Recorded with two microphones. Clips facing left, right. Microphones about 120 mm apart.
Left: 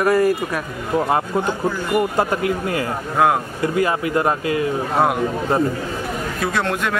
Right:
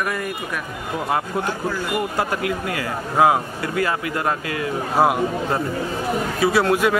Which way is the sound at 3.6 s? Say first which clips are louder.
Left 4 dB; 25° left (ahead or behind).